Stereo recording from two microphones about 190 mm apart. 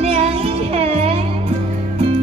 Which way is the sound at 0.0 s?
30° right (ahead or behind).